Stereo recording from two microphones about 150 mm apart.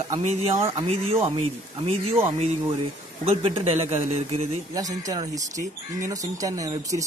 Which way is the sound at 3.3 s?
40° right (ahead or behind).